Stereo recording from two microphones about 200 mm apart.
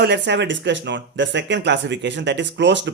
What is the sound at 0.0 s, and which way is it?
Speech, 60° right (ahead or behind).